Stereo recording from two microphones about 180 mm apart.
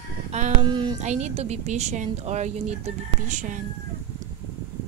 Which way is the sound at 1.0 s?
40° right (ahead or behind).